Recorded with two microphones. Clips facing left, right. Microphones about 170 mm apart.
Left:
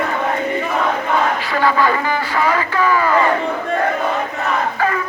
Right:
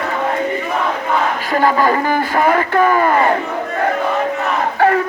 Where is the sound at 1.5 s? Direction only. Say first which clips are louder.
Right 3 dB; 45° right (ahead or behind).